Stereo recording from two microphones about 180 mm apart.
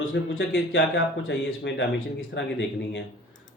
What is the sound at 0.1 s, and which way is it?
Speech, 75° left (ahead or behind).